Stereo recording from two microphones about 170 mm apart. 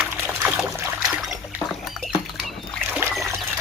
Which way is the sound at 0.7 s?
15° right (ahead or behind).